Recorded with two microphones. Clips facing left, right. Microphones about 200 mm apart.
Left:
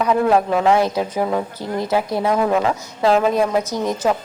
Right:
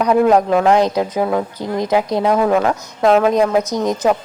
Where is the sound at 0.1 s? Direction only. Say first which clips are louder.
Right 4 dB; 15° right (ahead or behind).